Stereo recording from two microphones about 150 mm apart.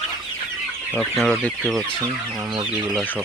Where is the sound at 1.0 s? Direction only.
Centre (ahead or behind).